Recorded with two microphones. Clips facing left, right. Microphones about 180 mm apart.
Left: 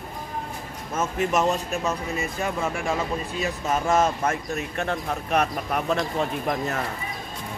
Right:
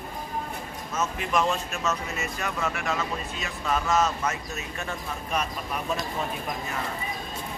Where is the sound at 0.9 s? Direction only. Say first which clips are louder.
Left 3 dB; 45° left (ahead or behind).